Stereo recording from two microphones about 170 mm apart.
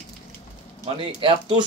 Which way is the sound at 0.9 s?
30° right (ahead or behind).